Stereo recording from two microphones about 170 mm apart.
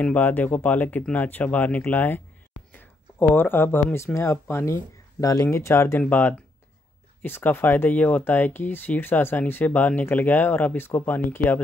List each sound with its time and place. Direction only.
0.0 s speech: 10° left (ahead or behind)